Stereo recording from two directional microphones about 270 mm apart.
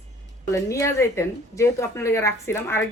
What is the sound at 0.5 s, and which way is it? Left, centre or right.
Speech, centre.